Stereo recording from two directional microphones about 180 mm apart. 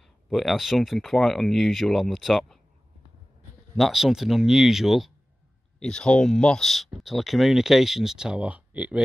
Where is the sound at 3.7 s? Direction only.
Centre (ahead or behind).